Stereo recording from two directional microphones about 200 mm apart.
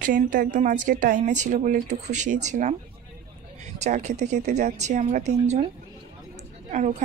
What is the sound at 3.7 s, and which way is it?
Speech, 35° right (ahead or behind).